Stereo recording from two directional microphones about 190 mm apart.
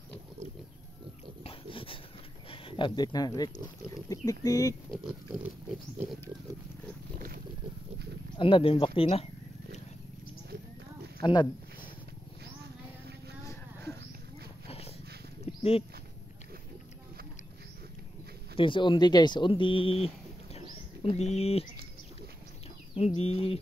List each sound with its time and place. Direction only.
1.4 s dog: 30° left (ahead or behind)
2.5 s speech: 25° left (ahead or behind)
4.9 s speech: 5° right (ahead or behind)
7.2 s boat: 45° right (ahead or behind)
8.4 s speech: 30° left (ahead or behind)
11.1 s speech: 25° left (ahead or behind)
14.7 s dog: 30° left (ahead or behind)
15.4 s a sound: 30° left (ahead or behind)
18.6 s speech: 25° left (ahead or behind)
22.9 s speech: 35° left (ahead or behind)